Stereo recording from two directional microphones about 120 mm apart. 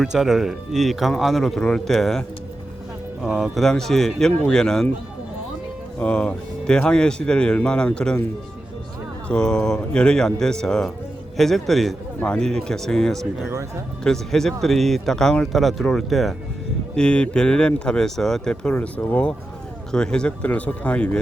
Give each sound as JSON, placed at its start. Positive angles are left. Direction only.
{"t": 0.0, "sound": "speech", "side_deg": -5}
{"t": 6.0, "sound": "speech", "side_deg": 10}
{"t": 9.3, "sound": "speech", "side_deg": 5}